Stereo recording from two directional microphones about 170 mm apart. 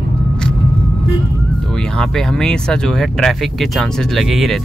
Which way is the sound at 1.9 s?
5° left (ahead or behind).